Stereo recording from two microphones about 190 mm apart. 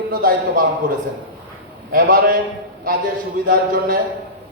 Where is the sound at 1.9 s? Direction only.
50° right (ahead or behind).